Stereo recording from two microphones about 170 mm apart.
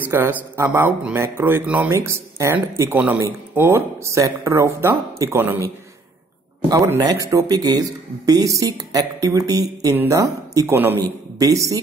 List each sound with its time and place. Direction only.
0.1 s speech: 15° right (ahead or behind)
6.7 s speech: 20° right (ahead or behind)